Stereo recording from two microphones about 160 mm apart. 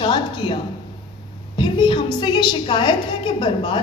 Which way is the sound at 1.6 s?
30° left (ahead or behind).